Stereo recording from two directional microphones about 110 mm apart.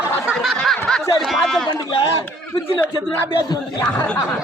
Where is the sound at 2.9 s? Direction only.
45° left (ahead or behind).